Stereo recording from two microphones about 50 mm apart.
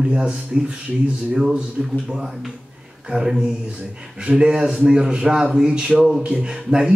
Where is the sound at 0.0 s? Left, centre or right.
Centre.